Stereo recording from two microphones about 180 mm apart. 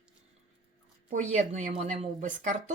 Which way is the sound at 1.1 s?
40° right (ahead or behind).